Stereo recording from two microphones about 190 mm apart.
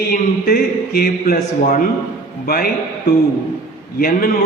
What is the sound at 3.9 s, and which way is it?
Speech, 50° left (ahead or behind).